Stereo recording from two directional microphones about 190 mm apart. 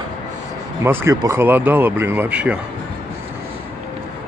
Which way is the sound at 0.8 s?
15° right (ahead or behind).